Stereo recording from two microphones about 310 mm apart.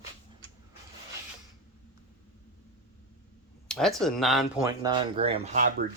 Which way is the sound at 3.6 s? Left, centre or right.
Centre.